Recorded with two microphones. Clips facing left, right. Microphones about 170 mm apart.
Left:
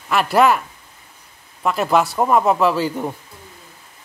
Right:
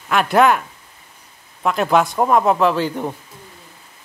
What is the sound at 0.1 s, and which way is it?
A man's voice, centre (ahead or behind).